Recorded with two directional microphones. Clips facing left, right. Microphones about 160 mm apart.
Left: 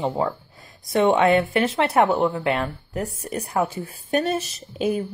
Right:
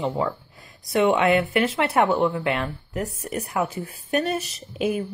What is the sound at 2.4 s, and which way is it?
Speech, 35° left (ahead or behind).